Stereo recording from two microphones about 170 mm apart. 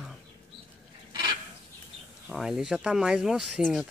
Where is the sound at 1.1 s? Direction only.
25° right (ahead or behind).